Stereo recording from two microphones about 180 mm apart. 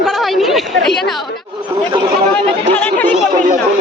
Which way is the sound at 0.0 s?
Centre (ahead or behind).